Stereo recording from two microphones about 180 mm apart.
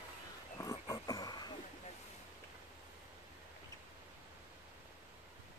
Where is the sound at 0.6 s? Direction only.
20° left (ahead or behind).